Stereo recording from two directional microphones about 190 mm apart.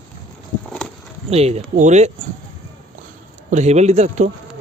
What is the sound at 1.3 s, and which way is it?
Speech, 30° right (ahead or behind).